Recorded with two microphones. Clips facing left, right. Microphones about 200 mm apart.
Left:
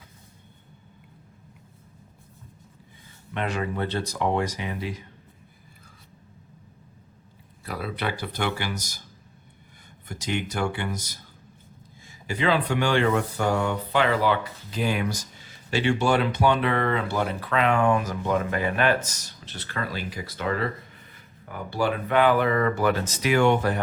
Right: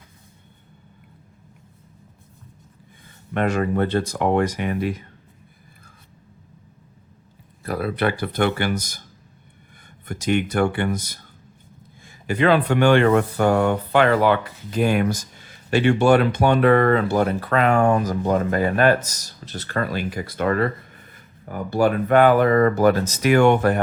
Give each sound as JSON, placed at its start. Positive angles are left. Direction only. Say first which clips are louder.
{"t": 3.3, "sound": "speech", "louder": "right 7 dB", "side_deg": -45}
{"t": 7.6, "sound": "speech", "louder": "right 8 dB", "side_deg": -55}
{"t": 10.1, "sound": "speech", "louder": "right 8 dB", "side_deg": -55}